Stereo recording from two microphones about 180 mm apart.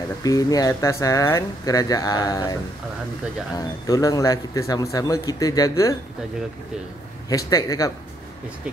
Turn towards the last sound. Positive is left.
turn(degrees=20)  # may be behind; listen again after turning